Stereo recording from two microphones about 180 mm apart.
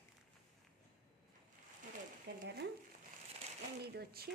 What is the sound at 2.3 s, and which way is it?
Speech, 65° right (ahead or behind).